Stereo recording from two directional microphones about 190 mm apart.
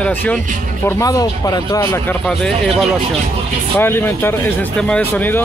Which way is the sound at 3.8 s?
10° left (ahead or behind).